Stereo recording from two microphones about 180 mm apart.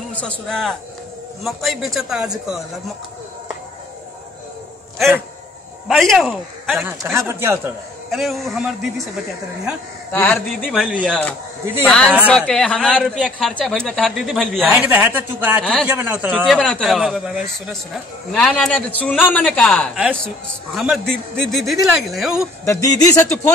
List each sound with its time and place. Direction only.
0.1 s speech: 5° left (ahead or behind)
5.9 s a man's voice: centre (ahead or behind)
7.0 s speech: 15° right (ahead or behind)
8.1 s speech: centre (ahead or behind)
10.1 s speech: 10° left (ahead or behind)
10.6 s speech: centre (ahead or behind)
14.7 s speech: 10° right (ahead or behind)
15.6 s speech: 5° left (ahead or behind)
15.9 s speech: 10° right (ahead or behind)
22.7 s speech: 20° left (ahead or behind)